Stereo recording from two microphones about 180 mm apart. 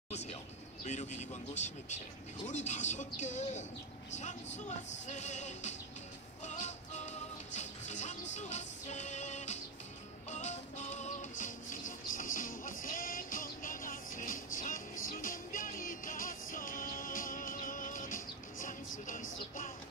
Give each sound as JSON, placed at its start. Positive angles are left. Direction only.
{"t": 0.1, "sound": "a sound", "side_deg": 40}
{"t": 0.8, "sound": "speech", "side_deg": 40}
{"t": 5.0, "sound": "speech", "side_deg": 40}
{"t": 6.4, "sound": "music", "side_deg": 40}